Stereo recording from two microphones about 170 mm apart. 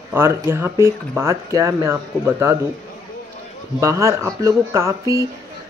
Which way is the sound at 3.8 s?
15° right (ahead or behind).